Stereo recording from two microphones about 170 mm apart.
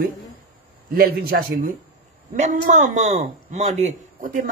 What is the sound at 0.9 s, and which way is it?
Speech, 60° right (ahead or behind).